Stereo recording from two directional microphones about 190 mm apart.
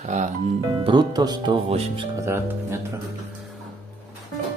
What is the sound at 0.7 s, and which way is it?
Speech, 25° right (ahead or behind).